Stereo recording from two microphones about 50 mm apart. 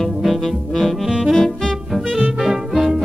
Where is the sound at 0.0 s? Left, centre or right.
Centre.